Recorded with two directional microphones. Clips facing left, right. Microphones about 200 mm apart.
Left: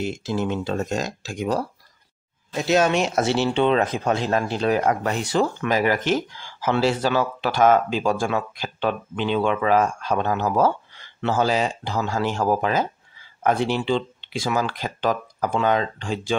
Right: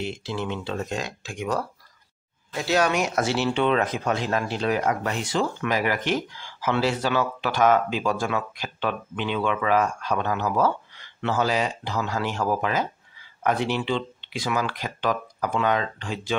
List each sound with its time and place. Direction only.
0.0 s speech: 45° left (ahead or behind)
2.5 s speech: 20° left (ahead or behind)